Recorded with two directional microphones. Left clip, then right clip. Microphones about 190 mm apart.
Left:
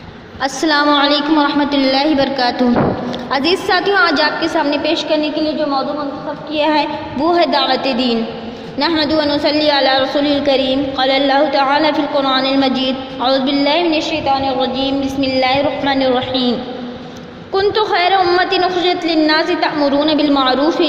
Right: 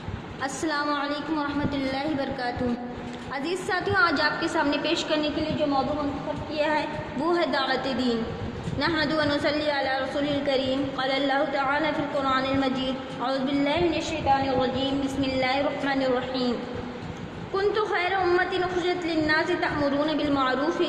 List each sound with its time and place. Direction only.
0.4 s a woman's voice: 35° left (ahead or behind)
6.6 s a woman's voice: 35° left (ahead or behind)